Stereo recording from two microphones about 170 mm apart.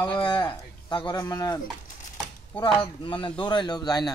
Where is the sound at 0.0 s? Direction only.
25° left (ahead or behind).